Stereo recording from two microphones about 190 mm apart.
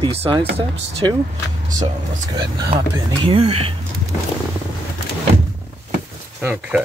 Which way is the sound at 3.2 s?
30° right (ahead or behind).